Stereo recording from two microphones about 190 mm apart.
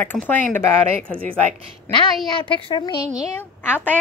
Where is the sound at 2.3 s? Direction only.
25° left (ahead or behind).